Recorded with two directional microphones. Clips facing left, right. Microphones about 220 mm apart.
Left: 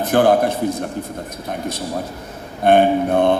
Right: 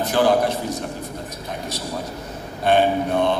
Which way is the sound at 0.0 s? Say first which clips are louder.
Left 3 dB; 55° left (ahead or behind).